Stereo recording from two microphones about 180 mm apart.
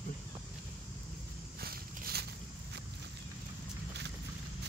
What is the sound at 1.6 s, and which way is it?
Walk, 60° right (ahead or behind).